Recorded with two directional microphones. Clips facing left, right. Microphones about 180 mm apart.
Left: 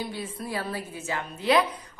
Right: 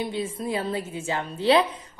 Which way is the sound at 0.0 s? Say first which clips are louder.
Right 5 dB; 25° right (ahead or behind).